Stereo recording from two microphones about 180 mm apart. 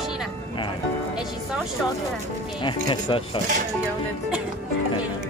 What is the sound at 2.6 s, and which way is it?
Speech, 25° left (ahead or behind).